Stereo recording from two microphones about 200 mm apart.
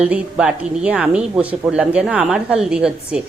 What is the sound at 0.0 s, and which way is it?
Speech, 5° right (ahead or behind).